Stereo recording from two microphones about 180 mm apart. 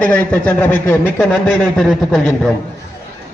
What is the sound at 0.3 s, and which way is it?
Speech, 10° left (ahead or behind).